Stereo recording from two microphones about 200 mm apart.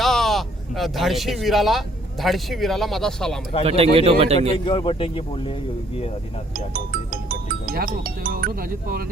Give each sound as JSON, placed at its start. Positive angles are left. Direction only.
{"t": 0.0, "sound": "a sound", "side_deg": 0}
{"t": 2.2, "sound": "speech", "side_deg": 0}
{"t": 3.6, "sound": "a man's voice", "side_deg": -30}
{"t": 4.5, "sound": "speech", "side_deg": 25}
{"t": 6.7, "sound": "speech", "side_deg": -45}